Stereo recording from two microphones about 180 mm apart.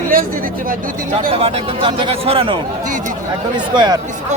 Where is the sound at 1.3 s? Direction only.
30° right (ahead or behind).